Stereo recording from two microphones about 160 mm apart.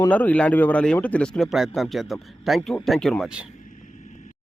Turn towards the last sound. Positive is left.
turn(degrees=-5)  # may be behind; listen again after turning